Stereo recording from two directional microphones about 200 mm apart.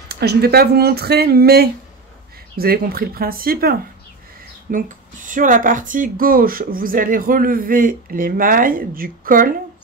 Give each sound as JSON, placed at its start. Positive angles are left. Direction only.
{"t": 0.1, "sound": "speech", "side_deg": -55}